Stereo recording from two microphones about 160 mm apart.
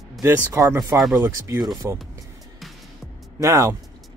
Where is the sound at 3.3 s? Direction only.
20° right (ahead or behind).